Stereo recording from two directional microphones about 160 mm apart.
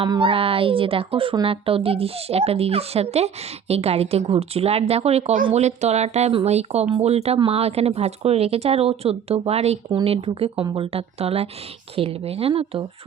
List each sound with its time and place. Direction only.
0.0 s a woman's voice: 30° right (ahead or behind)